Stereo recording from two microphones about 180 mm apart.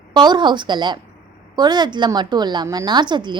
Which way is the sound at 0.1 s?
25° right (ahead or behind).